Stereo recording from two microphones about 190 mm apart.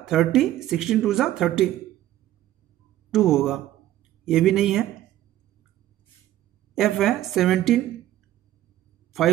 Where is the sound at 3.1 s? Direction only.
Centre (ahead or behind).